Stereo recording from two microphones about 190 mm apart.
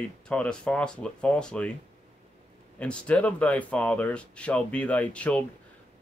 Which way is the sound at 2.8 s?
5° left (ahead or behind).